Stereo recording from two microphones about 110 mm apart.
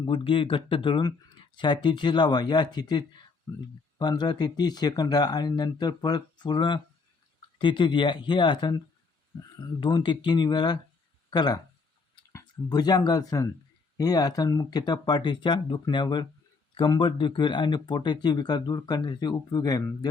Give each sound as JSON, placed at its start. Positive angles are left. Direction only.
{"t": 0.0, "sound": "speech", "side_deg": 50}
{"t": 3.9, "sound": "speech", "side_deg": 40}
{"t": 9.8, "sound": "speech", "side_deg": 45}